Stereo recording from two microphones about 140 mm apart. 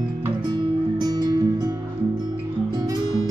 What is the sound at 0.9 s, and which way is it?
Music, 30° right (ahead or behind).